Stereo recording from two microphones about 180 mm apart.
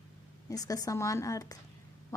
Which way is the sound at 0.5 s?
20° left (ahead or behind).